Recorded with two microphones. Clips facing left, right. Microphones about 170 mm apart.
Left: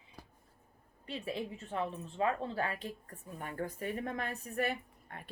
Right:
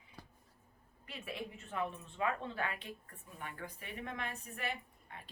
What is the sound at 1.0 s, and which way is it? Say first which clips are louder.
A woman's voice: left 6 dB; 30° left (ahead or behind).